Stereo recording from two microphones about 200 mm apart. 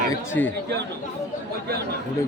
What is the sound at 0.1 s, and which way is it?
Speech, 10° left (ahead or behind).